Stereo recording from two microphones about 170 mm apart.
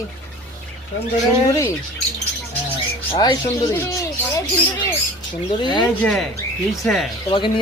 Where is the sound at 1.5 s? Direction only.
20° left (ahead or behind).